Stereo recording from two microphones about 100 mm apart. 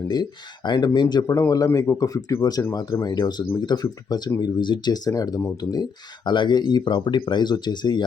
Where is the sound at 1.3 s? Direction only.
35° left (ahead or behind).